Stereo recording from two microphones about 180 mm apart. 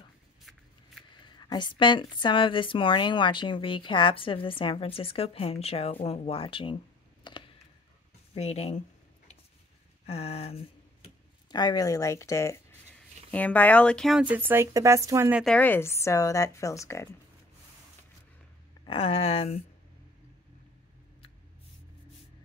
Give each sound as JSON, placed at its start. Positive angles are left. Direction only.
{"t": 1.1, "sound": "speech", "side_deg": 25}
{"t": 7.2, "sound": "a sound", "side_deg": 25}
{"t": 8.4, "sound": "speech", "side_deg": 35}
{"t": 10.0, "sound": "speech", "side_deg": 35}
{"t": 11.5, "sound": "speech", "side_deg": 20}
{"t": 14.3, "sound": "speech", "side_deg": -10}
{"t": 15.4, "sound": "speech", "side_deg": 10}
{"t": 18.9, "sound": "speech", "side_deg": 30}